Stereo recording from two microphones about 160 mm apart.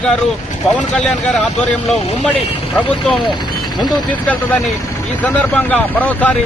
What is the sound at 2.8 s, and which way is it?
Speech, 5° left (ahead or behind).